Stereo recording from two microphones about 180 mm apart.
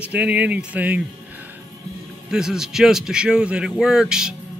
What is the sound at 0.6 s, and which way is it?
Music, 10° right (ahead or behind).